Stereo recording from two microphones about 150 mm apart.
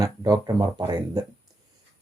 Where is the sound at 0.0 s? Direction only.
25° right (ahead or behind).